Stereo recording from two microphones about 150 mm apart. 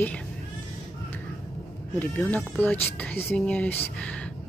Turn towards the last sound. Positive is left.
turn(degrees=10)  # may be behind; listen again after turning